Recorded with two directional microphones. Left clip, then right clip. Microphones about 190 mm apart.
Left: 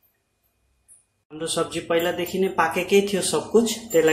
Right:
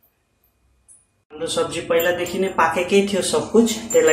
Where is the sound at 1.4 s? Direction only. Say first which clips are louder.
Right 3 dB; 50° left (ahead or behind).